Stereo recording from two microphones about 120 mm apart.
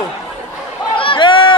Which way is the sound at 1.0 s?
45° left (ahead or behind).